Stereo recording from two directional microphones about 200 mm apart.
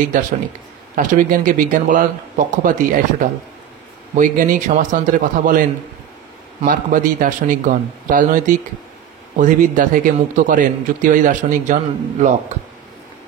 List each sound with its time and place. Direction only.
0.9 s a man's voice: 40° right (ahead or behind)